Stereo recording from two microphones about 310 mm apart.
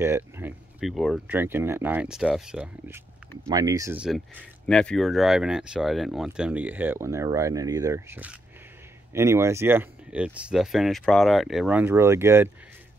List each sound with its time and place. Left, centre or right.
0.0 s speech: centre